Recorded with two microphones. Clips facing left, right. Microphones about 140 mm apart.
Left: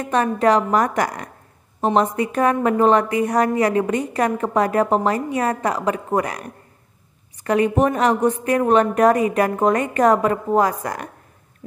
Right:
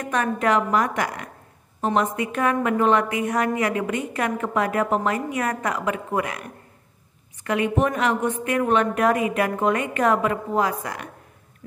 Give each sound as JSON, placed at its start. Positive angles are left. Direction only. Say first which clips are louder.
{"t": 0.0, "sound": "a woman's voice", "louder": "left 5 dB", "side_deg": 30}